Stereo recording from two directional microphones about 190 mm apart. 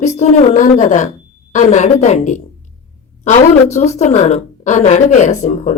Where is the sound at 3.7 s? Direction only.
35° left (ahead or behind).